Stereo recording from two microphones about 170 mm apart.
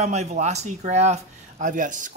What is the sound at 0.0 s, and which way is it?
Speech, 40° right (ahead or behind).